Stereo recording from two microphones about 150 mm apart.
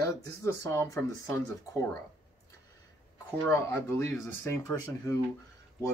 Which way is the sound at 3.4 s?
20° left (ahead or behind).